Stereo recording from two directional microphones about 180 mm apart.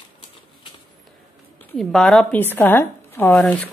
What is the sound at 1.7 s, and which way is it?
Speech, centre (ahead or behind).